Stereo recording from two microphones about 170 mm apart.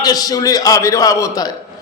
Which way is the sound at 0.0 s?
20° left (ahead or behind).